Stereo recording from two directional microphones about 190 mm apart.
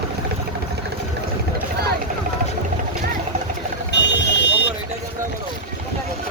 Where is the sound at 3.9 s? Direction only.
65° left (ahead or behind).